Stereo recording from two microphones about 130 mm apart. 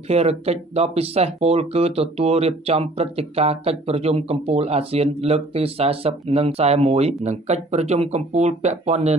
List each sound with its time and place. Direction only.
0.1 s speech: 55° right (ahead or behind)